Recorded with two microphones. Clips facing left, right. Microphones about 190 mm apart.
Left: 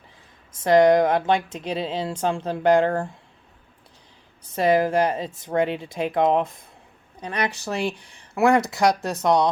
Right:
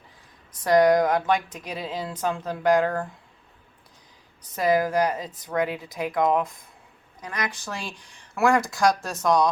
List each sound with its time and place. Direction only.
0.6 s speech: 25° left (ahead or behind)
4.5 s speech: 25° left (ahead or behind)
8.4 s speech: 20° left (ahead or behind)